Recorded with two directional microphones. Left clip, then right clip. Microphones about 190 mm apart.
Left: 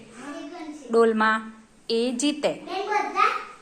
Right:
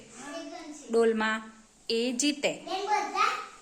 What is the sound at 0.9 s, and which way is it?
A woman's voice, 15° right (ahead or behind).